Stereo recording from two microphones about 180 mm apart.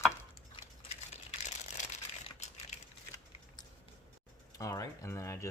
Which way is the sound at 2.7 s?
40° left (ahead or behind).